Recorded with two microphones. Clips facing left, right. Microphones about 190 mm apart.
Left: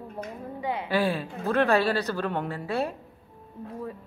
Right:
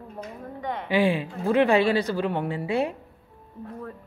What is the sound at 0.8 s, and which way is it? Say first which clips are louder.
A woman's voice: right 5 dB; 15° right (ahead or behind).